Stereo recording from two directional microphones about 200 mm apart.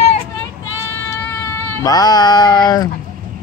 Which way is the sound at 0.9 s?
10° left (ahead or behind).